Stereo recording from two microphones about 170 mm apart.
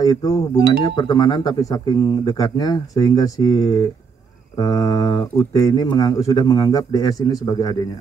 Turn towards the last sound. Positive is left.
turn(degrees=25)  # may be behind; listen again after turning